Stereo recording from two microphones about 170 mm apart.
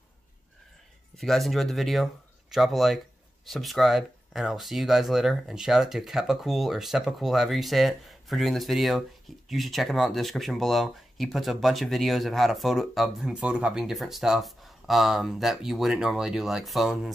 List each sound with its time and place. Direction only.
1.1 s speech: centre (ahead or behind)